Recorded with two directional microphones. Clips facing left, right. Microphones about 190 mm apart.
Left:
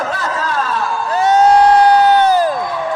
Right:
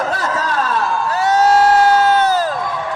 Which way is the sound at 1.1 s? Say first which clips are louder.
Left 3 dB; 20° left (ahead or behind).